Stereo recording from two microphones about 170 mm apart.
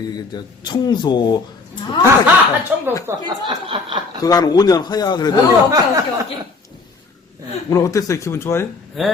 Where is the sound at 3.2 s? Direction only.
30° right (ahead or behind).